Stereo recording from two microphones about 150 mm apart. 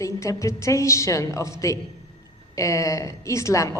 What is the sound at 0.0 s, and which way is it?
A woman's voice, 20° left (ahead or behind).